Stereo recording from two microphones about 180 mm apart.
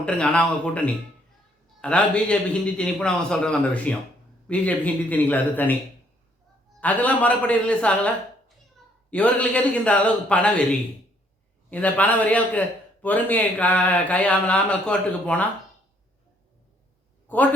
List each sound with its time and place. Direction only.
0.0 s a man's voice: 5° left (ahead or behind)
6.7 s a man's voice: 10° left (ahead or behind)
17.2 s speech: 10° left (ahead or behind)